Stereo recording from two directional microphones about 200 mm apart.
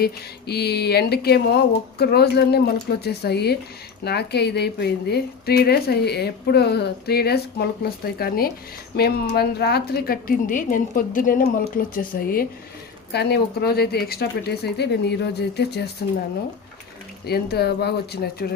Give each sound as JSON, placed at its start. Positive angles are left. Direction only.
{"t": 0.0, "sound": "a woman's voice", "side_deg": 55}
{"t": 17.2, "sound": "a woman's voice", "side_deg": 55}